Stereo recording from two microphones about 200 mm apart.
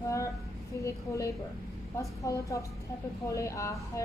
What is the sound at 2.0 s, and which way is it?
A woman's voice, 15° left (ahead or behind).